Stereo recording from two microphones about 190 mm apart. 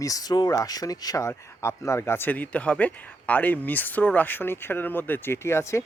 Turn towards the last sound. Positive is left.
turn(degrees=15)  # may be behind; listen again after turning